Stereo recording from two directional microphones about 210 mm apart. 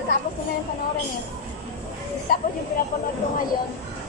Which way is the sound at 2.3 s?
45° left (ahead or behind).